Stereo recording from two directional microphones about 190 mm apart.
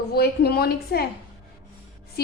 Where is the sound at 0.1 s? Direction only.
55° left (ahead or behind).